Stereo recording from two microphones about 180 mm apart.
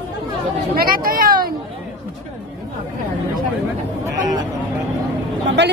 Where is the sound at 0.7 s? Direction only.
55° right (ahead or behind).